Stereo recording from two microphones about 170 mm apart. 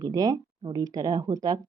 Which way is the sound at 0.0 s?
25° right (ahead or behind).